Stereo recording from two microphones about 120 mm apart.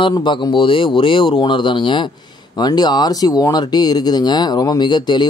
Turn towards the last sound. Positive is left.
turn(degrees=40)  # may be behind; listen again after turning